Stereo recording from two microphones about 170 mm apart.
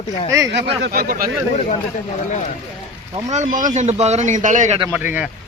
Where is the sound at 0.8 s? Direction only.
60° right (ahead or behind).